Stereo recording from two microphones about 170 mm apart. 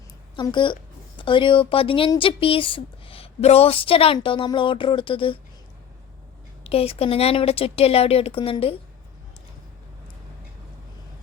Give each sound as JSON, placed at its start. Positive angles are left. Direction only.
{"t": 0.3, "sound": "a woman's voice", "side_deg": 30}
{"t": 6.7, "sound": "speech", "side_deg": 35}